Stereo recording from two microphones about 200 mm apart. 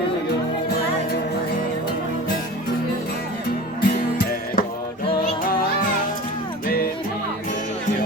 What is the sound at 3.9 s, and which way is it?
Music, 50° left (ahead or behind).